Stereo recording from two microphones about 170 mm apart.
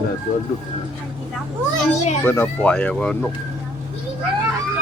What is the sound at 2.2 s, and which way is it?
Speech, 10° left (ahead or behind).